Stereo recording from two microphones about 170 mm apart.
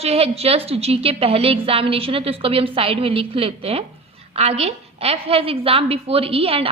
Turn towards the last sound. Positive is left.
turn(degrees=-35)  # may be behind; listen again after turning